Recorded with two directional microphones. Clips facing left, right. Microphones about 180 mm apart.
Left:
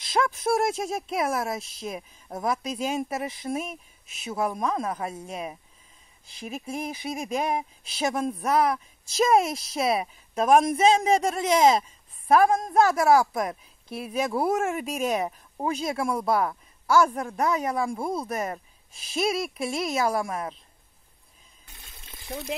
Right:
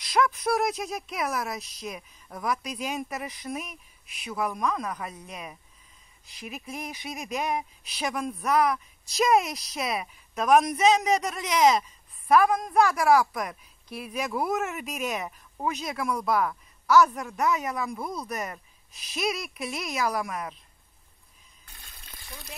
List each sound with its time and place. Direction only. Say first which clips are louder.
0.0 s speech: even; 25° left (ahead or behind)
21.7 s water: left 2 dB; 25° left (ahead or behind)